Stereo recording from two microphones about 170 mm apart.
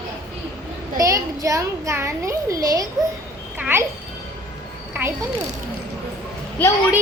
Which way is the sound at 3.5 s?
10° right (ahead or behind).